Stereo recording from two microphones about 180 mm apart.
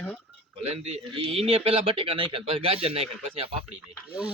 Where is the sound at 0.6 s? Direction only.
35° right (ahead or behind).